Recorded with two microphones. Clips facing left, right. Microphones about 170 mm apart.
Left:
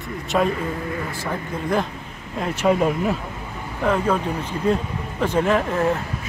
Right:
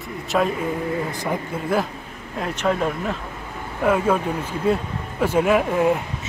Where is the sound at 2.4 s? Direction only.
10° left (ahead or behind).